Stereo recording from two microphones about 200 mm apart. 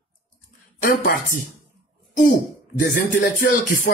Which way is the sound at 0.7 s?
45° left (ahead or behind).